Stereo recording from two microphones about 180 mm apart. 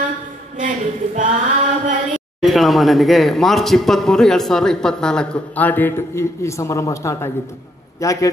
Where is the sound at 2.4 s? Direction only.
Centre (ahead or behind).